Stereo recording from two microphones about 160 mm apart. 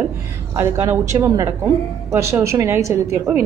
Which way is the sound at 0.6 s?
15° right (ahead or behind).